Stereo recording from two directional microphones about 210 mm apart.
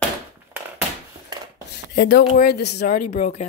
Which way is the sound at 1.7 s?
50° left (ahead or behind).